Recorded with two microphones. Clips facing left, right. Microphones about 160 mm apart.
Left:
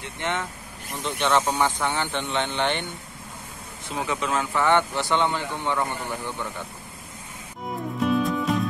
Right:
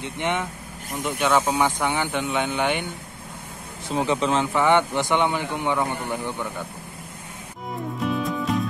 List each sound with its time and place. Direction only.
0.0 s a man's voice: 15° right (ahead or behind)
1.2 s a man's voice: 5° right (ahead or behind)
3.9 s a man's voice: 30° right (ahead or behind)
8.1 s music: centre (ahead or behind)